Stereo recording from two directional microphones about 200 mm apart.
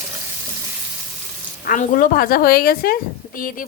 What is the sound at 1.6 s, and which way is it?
Speech, 45° left (ahead or behind).